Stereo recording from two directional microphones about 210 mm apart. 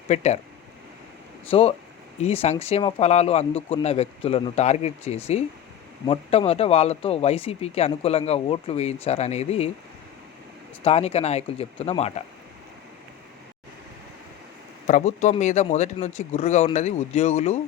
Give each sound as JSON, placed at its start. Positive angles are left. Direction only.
{"t": 0.1, "sound": "speech", "side_deg": 30}
{"t": 1.5, "sound": "speech", "side_deg": 25}
{"t": 10.8, "sound": "speech", "side_deg": 30}
{"t": 14.8, "sound": "speech", "side_deg": 35}